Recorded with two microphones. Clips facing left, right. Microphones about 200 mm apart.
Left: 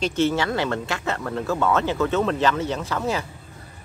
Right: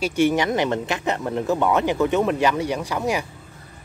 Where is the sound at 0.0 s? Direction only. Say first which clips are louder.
Right 2 dB; 15° right (ahead or behind).